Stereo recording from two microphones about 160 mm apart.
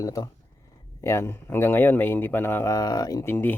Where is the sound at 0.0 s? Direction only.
20° left (ahead or behind).